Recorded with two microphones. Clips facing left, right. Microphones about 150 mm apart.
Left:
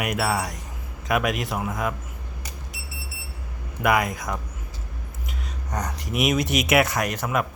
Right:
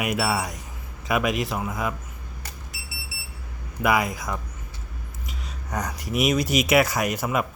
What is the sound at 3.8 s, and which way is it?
Speech, centre (ahead or behind).